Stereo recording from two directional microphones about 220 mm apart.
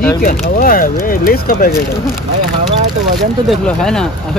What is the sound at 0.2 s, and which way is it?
Speech, 40° left (ahead or behind).